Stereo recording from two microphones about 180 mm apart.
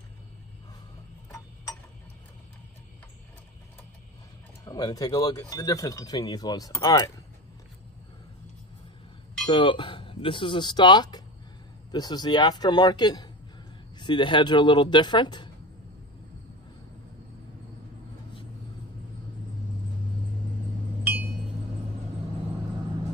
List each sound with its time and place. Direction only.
4.6 s speech: 20° left (ahead or behind)
9.5 s speech: 30° left (ahead or behind)